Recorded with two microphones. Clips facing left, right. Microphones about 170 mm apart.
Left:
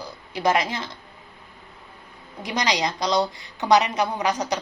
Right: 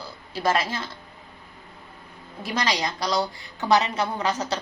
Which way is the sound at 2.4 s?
20° left (ahead or behind).